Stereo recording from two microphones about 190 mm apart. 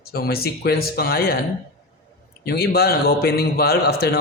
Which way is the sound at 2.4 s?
55° left (ahead or behind).